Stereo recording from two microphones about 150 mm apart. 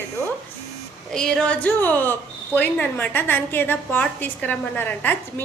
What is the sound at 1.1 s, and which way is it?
A woman's voice, 5° left (ahead or behind).